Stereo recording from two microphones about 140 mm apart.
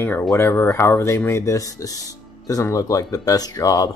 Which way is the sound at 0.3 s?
20° left (ahead or behind).